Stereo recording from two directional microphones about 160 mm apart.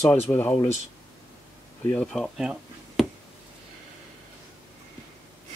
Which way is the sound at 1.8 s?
5° left (ahead or behind).